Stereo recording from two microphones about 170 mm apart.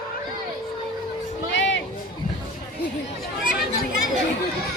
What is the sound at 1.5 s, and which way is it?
Music, 90° left.